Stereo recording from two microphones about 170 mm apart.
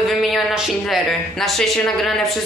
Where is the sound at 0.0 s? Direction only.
Centre (ahead or behind).